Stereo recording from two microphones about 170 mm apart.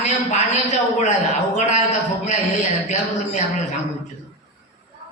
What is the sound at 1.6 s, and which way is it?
Speech, 45° left (ahead or behind).